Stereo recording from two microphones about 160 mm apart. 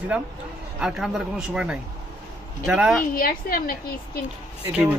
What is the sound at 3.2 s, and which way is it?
Speech, 65° left (ahead or behind).